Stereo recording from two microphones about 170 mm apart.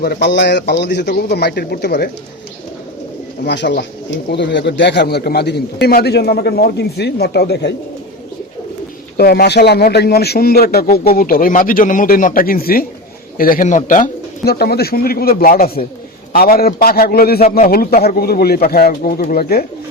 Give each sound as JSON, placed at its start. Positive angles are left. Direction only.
{"t": 0.0, "sound": "a man's voice", "side_deg": 80}
{"t": 3.4, "sound": "a man's voice", "side_deg": 90}
{"t": 9.1, "sound": "a man's voice", "side_deg": 65}